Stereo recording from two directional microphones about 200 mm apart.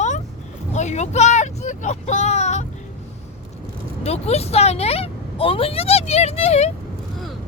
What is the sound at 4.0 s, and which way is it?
Speech, 30° left (ahead or behind).